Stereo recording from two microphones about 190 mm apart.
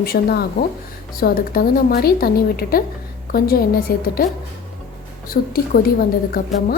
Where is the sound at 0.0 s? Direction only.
55° left (ahead or behind).